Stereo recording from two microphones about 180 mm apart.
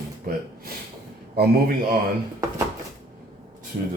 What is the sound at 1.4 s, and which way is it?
Speech, 60° right (ahead or behind).